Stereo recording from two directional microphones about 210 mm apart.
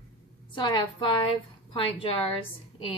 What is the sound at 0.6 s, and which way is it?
Speech, 20° left (ahead or behind).